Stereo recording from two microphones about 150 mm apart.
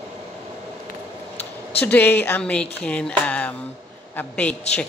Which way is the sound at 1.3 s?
45° left (ahead or behind).